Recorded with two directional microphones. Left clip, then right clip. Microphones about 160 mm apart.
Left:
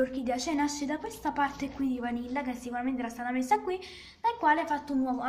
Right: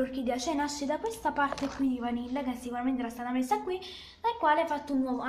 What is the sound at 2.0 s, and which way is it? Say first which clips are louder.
A woman's voice: even; 15° left (ahead or behind).